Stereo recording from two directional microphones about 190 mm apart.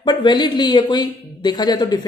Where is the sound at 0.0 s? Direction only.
20° left (ahead or behind).